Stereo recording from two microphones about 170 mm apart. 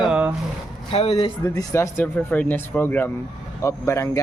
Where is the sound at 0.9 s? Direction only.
35° left (ahead or behind).